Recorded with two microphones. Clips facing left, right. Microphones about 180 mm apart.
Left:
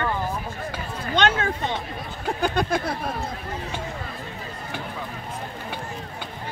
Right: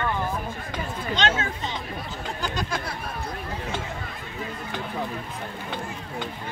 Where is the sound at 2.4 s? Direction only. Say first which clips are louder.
Left 7 dB; 55° left (ahead or behind).